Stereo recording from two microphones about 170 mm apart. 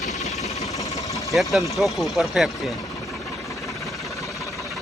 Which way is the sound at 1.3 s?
Centre (ahead or behind).